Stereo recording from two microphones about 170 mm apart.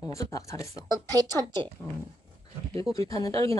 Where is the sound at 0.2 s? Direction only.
20° left (ahead or behind).